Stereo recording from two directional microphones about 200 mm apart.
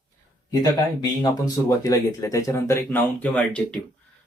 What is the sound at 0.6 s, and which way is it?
Speech, 20° left (ahead or behind).